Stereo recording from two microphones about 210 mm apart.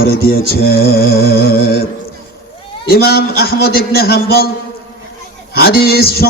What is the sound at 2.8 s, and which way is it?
A man's voice, 45° left (ahead or behind).